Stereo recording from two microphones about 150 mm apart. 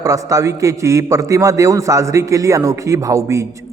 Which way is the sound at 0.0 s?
20° right (ahead or behind).